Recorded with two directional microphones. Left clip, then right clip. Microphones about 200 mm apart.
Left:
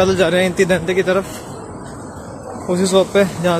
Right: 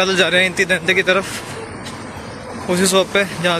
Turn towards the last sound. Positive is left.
turn(degrees=20)  # may be behind; listen again after turning